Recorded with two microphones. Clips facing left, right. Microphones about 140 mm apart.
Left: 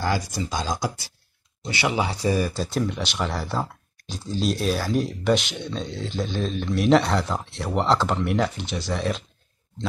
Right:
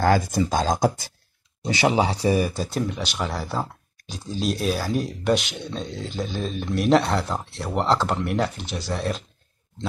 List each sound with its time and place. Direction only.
0.0 s speech: 45° right (ahead or behind)
2.2 s speech: 15° right (ahead or behind)
2.5 s speech: centre (ahead or behind)